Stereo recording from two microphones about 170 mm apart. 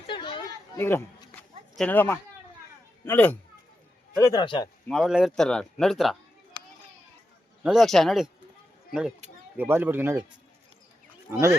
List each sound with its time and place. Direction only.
0.1 s a sound: 30° left (ahead or behind)
0.8 s speech: 15° left (ahead or behind)
1.4 s a sound: 5° left (ahead or behind)
3.0 s speech: 10° left (ahead or behind)
4.2 s a man's voice: 20° left (ahead or behind)
4.9 s speech: centre (ahead or behind)
7.6 s speech: centre (ahead or behind)
11.3 s speech: 15° right (ahead or behind)